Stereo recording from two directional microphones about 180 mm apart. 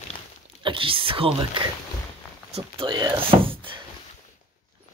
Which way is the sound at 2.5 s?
30° right (ahead or behind).